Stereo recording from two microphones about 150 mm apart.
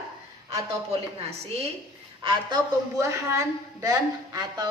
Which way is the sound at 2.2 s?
35° right (ahead or behind).